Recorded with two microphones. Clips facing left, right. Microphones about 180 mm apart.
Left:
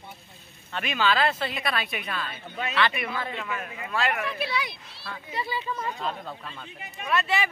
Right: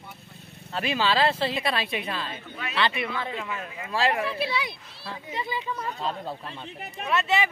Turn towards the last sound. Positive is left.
turn(degrees=-20)  # may be behind; listen again after turning